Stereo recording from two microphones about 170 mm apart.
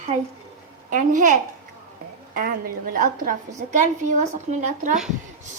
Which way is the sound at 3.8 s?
45° right (ahead or behind).